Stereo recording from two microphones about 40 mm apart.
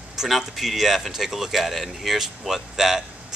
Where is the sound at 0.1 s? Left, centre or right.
Centre.